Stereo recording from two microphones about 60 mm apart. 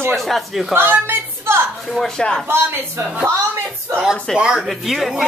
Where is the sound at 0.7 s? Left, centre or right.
Right.